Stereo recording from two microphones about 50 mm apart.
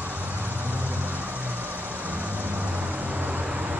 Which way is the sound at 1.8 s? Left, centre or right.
Right.